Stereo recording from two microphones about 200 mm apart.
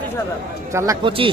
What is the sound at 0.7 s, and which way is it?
Speech, 15° right (ahead or behind).